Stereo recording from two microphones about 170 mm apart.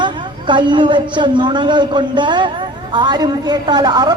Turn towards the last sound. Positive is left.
turn(degrees=-25)  # may be behind; listen again after turning